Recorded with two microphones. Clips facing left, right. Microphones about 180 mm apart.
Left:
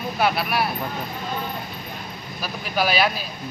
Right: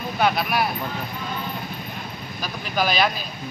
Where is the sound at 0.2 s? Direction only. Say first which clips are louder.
Right 1 dB; 5° left (ahead or behind).